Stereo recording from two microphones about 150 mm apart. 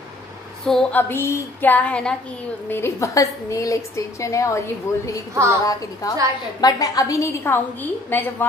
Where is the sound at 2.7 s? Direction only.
20° left (ahead or behind).